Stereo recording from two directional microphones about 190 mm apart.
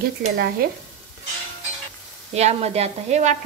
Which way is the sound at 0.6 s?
50° right (ahead or behind).